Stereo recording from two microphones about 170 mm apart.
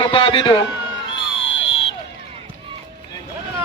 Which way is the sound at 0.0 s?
30° left (ahead or behind).